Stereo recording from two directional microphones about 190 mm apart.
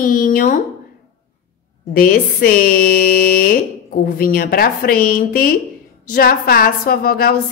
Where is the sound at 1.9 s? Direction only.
50° left (ahead or behind).